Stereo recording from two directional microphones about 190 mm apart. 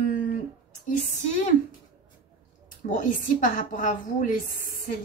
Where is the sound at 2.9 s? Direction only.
45° left (ahead or behind).